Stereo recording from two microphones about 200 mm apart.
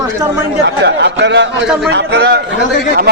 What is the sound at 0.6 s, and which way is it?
Speech, 60° right (ahead or behind).